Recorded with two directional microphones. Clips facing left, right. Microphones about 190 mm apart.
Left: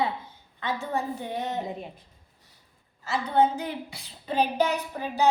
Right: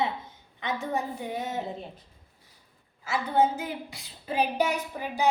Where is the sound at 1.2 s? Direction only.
10° right (ahead or behind).